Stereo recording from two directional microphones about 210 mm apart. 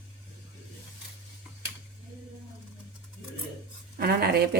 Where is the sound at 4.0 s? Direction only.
50° right (ahead or behind).